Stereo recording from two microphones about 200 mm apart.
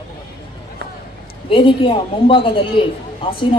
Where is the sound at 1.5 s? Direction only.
25° left (ahead or behind).